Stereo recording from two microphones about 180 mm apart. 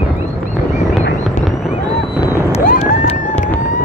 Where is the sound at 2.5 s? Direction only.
45° left (ahead or behind).